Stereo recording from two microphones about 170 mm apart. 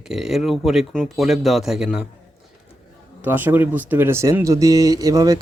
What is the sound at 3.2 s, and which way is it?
Speech, 10° right (ahead or behind).